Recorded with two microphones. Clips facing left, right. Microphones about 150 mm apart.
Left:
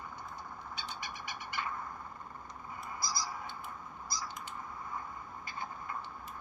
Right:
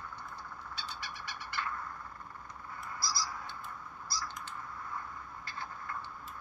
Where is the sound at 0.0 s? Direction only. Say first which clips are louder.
Left 1 dB; 15° left (ahead or behind).